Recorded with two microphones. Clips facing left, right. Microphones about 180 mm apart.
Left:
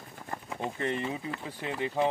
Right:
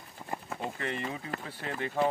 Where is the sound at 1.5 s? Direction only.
15° left (ahead or behind).